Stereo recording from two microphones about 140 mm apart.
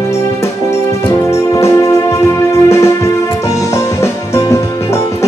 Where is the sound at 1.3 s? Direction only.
20° left (ahead or behind).